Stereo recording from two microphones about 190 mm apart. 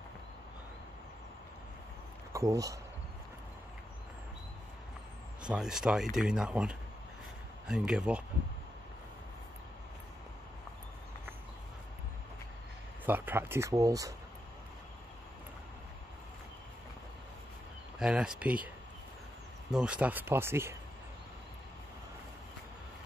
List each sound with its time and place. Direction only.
2.3 s speech: 15° right (ahead or behind)
5.5 s speech: 5° right (ahead or behind)
13.0 s speech: 10° right (ahead or behind)
17.9 s speech: 5° right (ahead or behind)
19.7 s speech: 5° right (ahead or behind)